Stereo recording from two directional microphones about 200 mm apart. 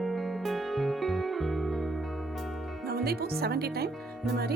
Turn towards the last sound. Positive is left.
turn(degrees=0)  # may be behind; listen again after turning